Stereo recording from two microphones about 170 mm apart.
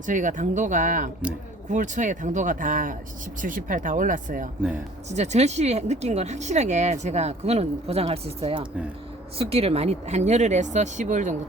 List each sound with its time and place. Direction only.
0.0 s speech: 50° right (ahead or behind)
5.1 s speech: 40° right (ahead or behind)